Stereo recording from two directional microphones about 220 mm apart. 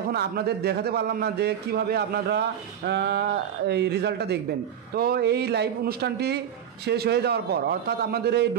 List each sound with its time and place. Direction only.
0.1 s a man's voice: 45° right (ahead or behind)